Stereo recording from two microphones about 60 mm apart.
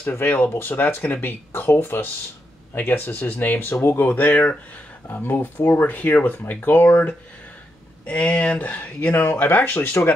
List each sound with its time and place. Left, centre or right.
0.2 s speech: left
0.6 s speech: left